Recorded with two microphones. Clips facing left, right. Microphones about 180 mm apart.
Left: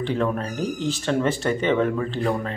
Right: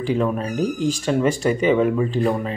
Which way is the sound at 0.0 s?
10° right (ahead or behind).